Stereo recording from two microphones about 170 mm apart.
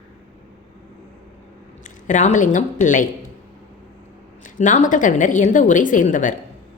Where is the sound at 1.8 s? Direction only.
45° left (ahead or behind).